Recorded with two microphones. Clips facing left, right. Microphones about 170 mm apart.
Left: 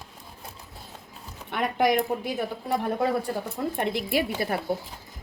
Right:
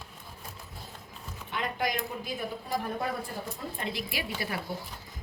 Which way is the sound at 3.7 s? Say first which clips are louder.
Left 10 dB; 60° left (ahead or behind).